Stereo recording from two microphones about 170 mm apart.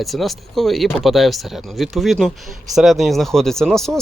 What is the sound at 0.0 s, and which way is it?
Speech, centre (ahead or behind).